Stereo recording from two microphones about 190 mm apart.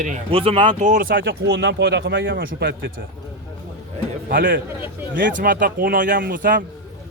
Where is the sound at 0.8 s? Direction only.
45° right (ahead or behind).